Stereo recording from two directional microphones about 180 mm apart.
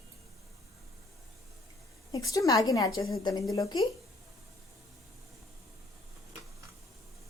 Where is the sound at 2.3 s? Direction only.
20° left (ahead or behind).